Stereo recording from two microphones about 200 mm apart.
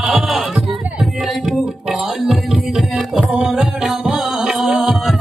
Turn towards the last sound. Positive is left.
turn(degrees=0)  # may be behind; listen again after turning